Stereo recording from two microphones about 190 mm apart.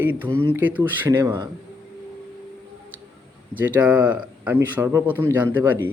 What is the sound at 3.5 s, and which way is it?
Speech, 10° right (ahead or behind).